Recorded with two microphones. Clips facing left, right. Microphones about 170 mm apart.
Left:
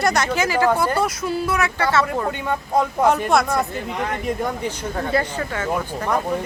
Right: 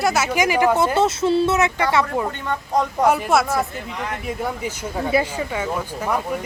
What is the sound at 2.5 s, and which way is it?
Speech, 5° left (ahead or behind).